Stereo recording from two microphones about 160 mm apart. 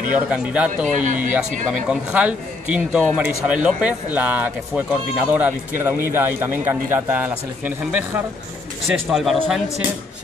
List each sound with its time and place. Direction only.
0.1 s speech: 5° right (ahead or behind)
1.0 s speech: 55° right (ahead or behind)
1.7 s speech: 5° right (ahead or behind)
9.1 s a man's voice: centre (ahead or behind)